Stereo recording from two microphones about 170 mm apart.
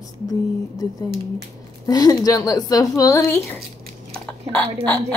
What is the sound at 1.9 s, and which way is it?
A woman's voice, 20° left (ahead or behind).